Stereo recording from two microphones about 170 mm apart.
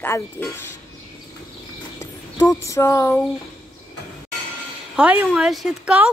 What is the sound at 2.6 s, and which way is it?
Speech, 15° left (ahead or behind).